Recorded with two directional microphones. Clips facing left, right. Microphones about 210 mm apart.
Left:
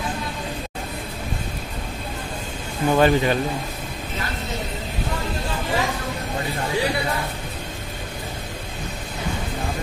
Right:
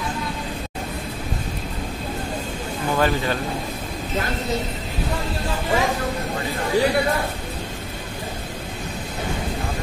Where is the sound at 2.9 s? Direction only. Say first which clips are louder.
Left 4 dB; 20° left (ahead or behind).